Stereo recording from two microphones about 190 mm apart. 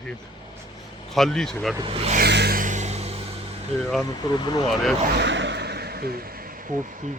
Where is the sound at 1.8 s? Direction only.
30° right (ahead or behind).